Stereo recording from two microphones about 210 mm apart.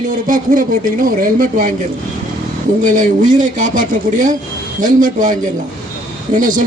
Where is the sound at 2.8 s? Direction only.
35° right (ahead or behind).